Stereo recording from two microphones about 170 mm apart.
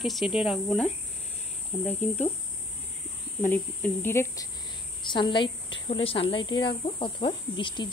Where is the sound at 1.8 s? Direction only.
10° left (ahead or behind).